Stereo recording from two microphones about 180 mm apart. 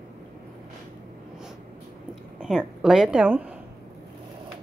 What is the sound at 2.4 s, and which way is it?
A woman's voice, 5° right (ahead or behind).